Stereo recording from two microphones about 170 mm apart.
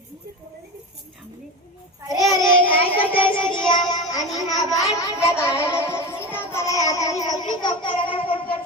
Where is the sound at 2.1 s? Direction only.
20° left (ahead or behind).